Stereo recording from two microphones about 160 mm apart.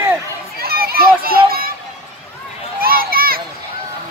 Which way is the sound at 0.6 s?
70° right (ahead or behind).